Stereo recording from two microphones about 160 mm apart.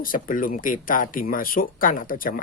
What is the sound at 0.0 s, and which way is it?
Speech, 60° left (ahead or behind).